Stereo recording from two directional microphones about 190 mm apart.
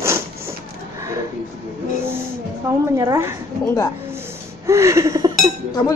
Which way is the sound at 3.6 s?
15° left (ahead or behind).